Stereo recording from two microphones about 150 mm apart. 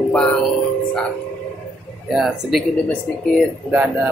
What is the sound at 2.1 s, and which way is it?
Speech, 5° right (ahead or behind).